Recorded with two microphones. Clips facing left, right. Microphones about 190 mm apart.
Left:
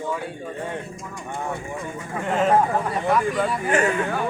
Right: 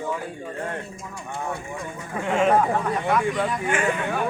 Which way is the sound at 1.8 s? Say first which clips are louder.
Left 1 dB; centre (ahead or behind).